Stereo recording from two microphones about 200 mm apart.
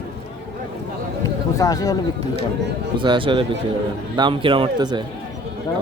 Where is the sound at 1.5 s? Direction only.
15° left (ahead or behind).